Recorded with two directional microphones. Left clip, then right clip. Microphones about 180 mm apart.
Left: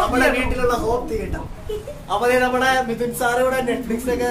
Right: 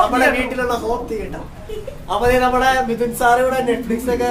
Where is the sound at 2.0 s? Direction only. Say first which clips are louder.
Right 2 dB; 5° right (ahead or behind).